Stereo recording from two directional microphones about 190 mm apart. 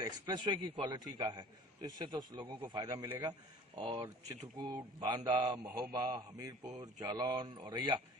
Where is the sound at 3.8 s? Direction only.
25° right (ahead or behind).